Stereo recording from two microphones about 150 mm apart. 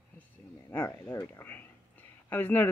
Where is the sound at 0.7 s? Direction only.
15° left (ahead or behind).